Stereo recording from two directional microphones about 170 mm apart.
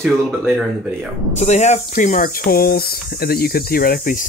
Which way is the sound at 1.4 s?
40° left (ahead or behind).